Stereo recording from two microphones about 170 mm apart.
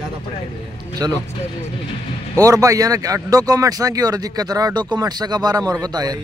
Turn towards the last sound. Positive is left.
turn(degrees=-20)  # may be behind; listen again after turning